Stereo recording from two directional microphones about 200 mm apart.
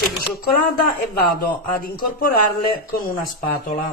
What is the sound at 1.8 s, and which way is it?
Speech, 45° left (ahead or behind).